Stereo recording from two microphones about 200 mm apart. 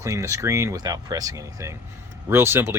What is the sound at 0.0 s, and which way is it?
Speech, 15° right (ahead or behind).